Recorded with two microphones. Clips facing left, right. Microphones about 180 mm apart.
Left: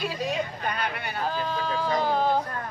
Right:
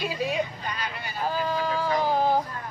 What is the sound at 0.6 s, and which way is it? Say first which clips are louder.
Vehicle: left 4 dB; 60° left (ahead or behind).